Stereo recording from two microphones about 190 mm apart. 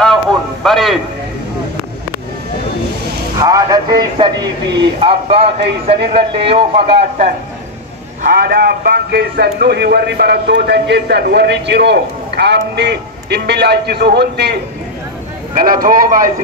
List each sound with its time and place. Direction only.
0.7 s a man's voice: centre (ahead or behind)
3.3 s speech: 20° right (ahead or behind); by 7.3 s 35° right (ahead or behind)
8.2 s a man's voice: 55° right (ahead or behind)
15.5 s speech: 45° right (ahead or behind)